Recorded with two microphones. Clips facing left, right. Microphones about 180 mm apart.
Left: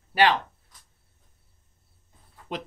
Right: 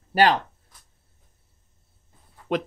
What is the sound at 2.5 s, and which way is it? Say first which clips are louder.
Speech: right 9 dB; 60° right (ahead or behind).